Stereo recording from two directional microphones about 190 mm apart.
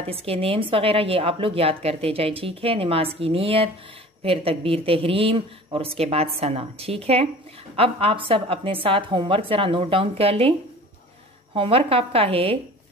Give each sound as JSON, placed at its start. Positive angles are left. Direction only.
{"t": 0.0, "sound": "a woman's voice", "side_deg": -30}
{"t": 11.5, "sound": "a woman's voice", "side_deg": -30}